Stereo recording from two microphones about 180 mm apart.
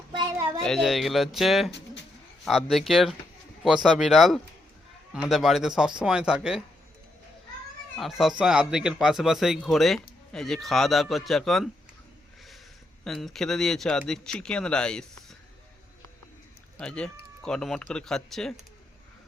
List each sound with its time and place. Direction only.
0.1 s a sound: 20° right (ahead or behind)
0.6 s speech: centre (ahead or behind)
7.9 s speech: centre (ahead or behind)
13.1 s speech: centre (ahead or behind)
16.7 s speech: 5° left (ahead or behind)